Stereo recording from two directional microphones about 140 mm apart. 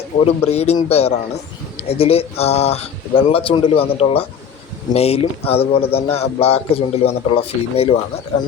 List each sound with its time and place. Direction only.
0.3 s a man's voice: 45° left (ahead or behind)